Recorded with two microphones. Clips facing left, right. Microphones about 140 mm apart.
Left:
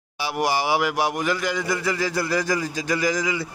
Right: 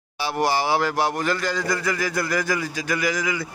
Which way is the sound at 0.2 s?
15° left (ahead or behind).